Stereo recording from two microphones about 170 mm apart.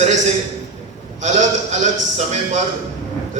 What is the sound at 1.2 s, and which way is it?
A man's voice, 45° right (ahead or behind).